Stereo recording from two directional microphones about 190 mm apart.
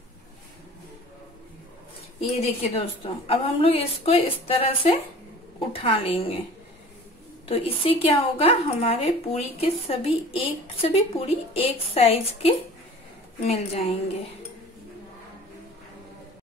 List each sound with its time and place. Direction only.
2.1 s a woman's voice: 30° left (ahead or behind)
7.4 s a woman's voice: 30° left (ahead or behind)